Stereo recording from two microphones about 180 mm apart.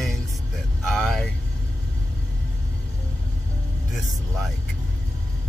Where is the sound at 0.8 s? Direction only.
Centre (ahead or behind).